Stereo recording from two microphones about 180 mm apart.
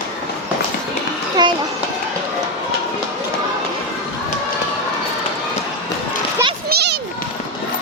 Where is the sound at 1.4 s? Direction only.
25° right (ahead or behind).